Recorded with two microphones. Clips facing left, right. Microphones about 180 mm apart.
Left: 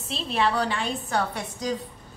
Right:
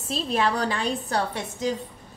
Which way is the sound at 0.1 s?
40° right (ahead or behind).